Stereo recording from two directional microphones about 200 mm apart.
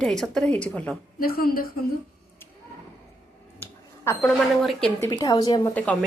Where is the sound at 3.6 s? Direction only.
15° left (ahead or behind).